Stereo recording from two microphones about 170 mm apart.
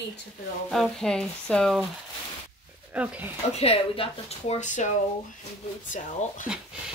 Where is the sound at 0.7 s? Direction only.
Centre (ahead or behind).